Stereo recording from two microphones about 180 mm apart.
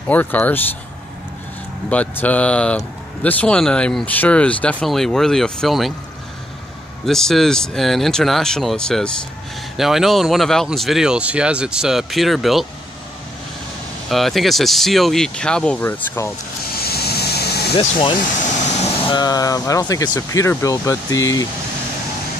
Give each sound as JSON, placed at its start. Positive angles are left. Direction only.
{"t": 0.1, "sound": "speech", "side_deg": 10}
{"t": 1.9, "sound": "speech", "side_deg": 10}
{"t": 7.1, "sound": "speech", "side_deg": 0}
{"t": 14.0, "sound": "speech", "side_deg": 0}
{"t": 16.7, "sound": "vehicle", "side_deg": 60}
{"t": 17.7, "sound": "speech", "side_deg": 30}